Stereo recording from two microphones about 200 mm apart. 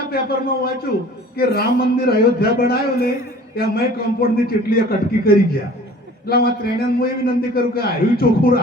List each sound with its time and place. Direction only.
0.1 s a man's voice: 50° left (ahead or behind)